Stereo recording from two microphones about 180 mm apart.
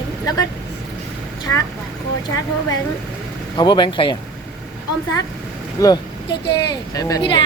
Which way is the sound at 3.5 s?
25° left (ahead or behind).